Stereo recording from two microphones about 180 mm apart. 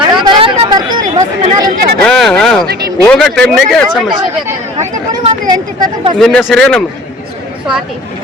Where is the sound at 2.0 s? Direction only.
5° left (ahead or behind).